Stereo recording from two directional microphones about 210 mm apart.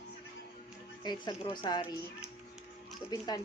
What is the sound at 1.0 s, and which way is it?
Speech, 20° left (ahead or behind).